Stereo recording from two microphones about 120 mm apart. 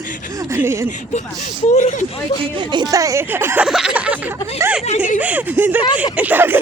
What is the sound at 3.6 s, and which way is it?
Speech, 5° right (ahead or behind).